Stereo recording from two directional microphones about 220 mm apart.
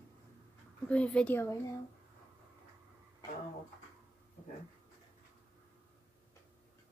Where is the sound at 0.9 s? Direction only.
5° left (ahead or behind).